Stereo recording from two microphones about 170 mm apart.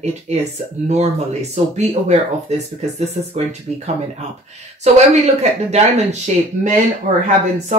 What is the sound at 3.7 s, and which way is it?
Speech, 40° right (ahead or behind).